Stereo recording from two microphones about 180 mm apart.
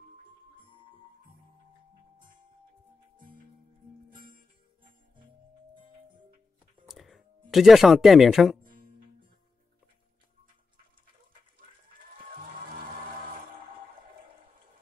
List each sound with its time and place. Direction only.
6.9 s music: centre (ahead or behind)